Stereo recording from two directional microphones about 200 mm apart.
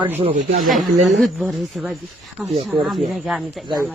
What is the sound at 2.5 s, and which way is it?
Speech, 30° right (ahead or behind).